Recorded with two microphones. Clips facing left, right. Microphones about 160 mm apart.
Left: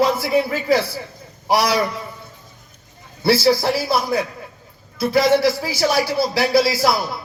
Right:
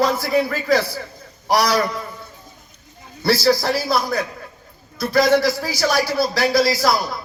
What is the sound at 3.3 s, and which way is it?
Speech, 25° left (ahead or behind).